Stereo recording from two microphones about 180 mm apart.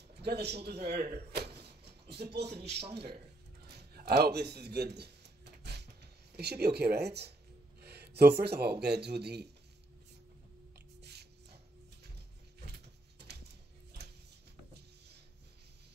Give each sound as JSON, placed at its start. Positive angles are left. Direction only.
{"t": 0.2, "sound": "speech", "side_deg": -65}
{"t": 3.6, "sound": "a sound", "side_deg": -65}
{"t": 6.3, "sound": "speech", "side_deg": -65}
{"t": 11.0, "sound": "music", "side_deg": -65}